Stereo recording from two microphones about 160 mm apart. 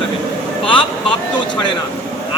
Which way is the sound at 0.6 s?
35° left (ahead or behind).